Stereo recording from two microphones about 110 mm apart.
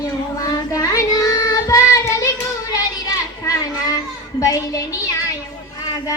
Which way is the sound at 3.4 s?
30° left (ahead or behind).